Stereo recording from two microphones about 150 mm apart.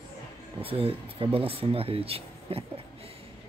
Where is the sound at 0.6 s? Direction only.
40° right (ahead or behind).